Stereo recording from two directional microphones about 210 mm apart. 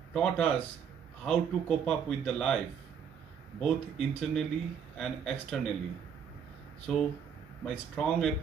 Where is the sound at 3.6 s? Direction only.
5° left (ahead or behind).